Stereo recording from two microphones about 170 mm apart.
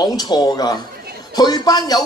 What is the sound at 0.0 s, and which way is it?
A man's voice, 25° left (ahead or behind).